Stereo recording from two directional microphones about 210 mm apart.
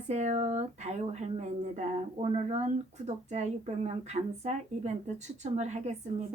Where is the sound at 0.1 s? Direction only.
35° right (ahead or behind).